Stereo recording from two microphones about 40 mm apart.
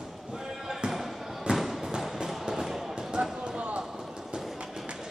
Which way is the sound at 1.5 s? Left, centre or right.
Centre.